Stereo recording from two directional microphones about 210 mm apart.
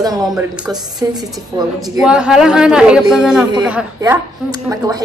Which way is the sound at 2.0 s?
5° right (ahead or behind).